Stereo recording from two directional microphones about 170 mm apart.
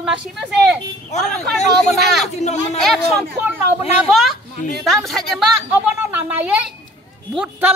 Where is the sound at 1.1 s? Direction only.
45° left (ahead or behind).